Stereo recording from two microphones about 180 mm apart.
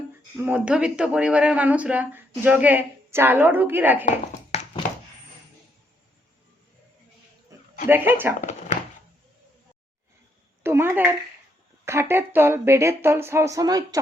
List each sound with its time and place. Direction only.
0.4 s speech: 10° right (ahead or behind)
4.5 s a sound: 35° left (ahead or behind)
7.9 s speech: 10° right (ahead or behind)
8.4 s dog: 40° left (ahead or behind)
10.6 s speech: 15° right (ahead or behind)